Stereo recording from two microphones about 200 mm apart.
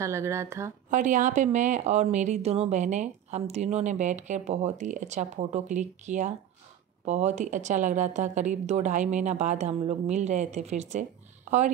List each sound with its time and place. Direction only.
0.0 s speech: 15° right (ahead or behind)
0.8 s a woman's voice: 40° right (ahead or behind)